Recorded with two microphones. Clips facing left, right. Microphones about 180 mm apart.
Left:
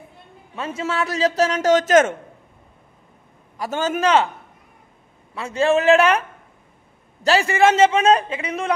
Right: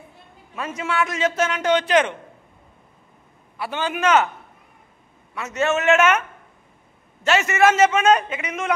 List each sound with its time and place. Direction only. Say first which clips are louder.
0.6 s a man's voice: even; 30° left (ahead or behind)
3.5 s a man's voice: left 3 dB; 40° left (ahead or behind)
5.3 s a man's voice: left 4 dB; 30° left (ahead or behind)
7.2 s a man's voice: left 1 dB; 30° left (ahead or behind)